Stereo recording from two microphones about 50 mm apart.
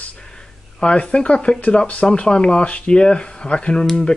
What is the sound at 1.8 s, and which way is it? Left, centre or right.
Speech, left.